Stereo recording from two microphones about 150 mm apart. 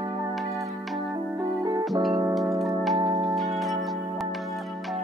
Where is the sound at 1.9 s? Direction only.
Centre (ahead or behind).